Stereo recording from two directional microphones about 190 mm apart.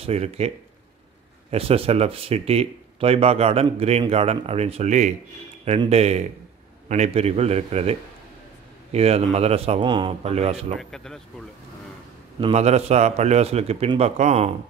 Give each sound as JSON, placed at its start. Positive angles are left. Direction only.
{"t": 0.0, "sound": "speech", "side_deg": -35}
{"t": 1.5, "sound": "speech", "side_deg": -30}
{"t": 8.9, "sound": "speech", "side_deg": -35}
{"t": 10.8, "sound": "speech", "side_deg": 0}
{"t": 12.4, "sound": "speech", "side_deg": -30}